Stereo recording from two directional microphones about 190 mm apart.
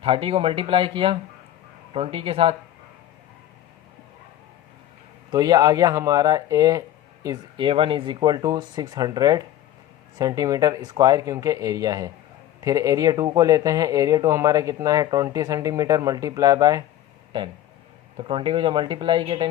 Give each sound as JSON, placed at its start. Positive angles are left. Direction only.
{"t": 0.0, "sound": "speech", "side_deg": -30}
{"t": 5.3, "sound": "speech", "side_deg": -20}